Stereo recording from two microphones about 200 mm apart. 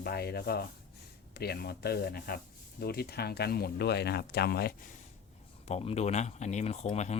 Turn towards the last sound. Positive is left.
turn(degrees=35)  # may be behind; listen again after turning